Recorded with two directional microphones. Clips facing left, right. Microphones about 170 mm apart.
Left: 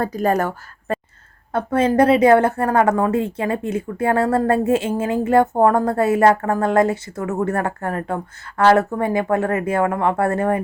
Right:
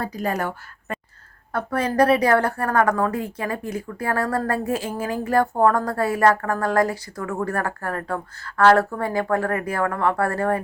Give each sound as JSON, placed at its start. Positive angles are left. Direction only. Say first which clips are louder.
{"t": 0.0, "sound": "speech", "louder": "left 6 dB", "side_deg": 50}
{"t": 0.9, "sound": "a sound", "louder": "left 8 dB", "side_deg": 35}
{"t": 1.5, "sound": "a woman's voice", "louder": "left 4 dB", "side_deg": 25}